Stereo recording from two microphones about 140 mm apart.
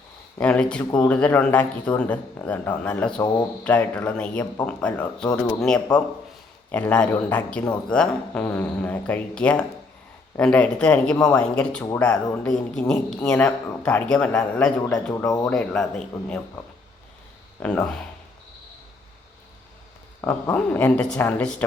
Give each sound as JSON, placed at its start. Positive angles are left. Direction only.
{"t": 0.3, "sound": "speech", "side_deg": 10}
{"t": 3.2, "sound": "speech", "side_deg": 30}
{"t": 3.6, "sound": "a man's voice", "side_deg": 10}
{"t": 17.6, "sound": "speech", "side_deg": 10}
{"t": 20.2, "sound": "speech", "side_deg": 10}